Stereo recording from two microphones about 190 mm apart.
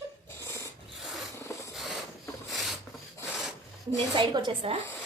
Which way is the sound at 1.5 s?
15° left (ahead or behind).